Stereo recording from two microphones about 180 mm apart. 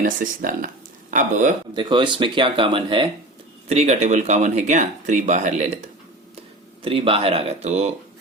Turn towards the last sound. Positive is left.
turn(degrees=-40)  # may be behind; listen again after turning